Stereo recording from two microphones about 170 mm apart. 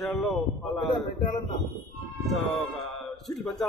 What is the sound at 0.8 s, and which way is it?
Speech, 25° left (ahead or behind).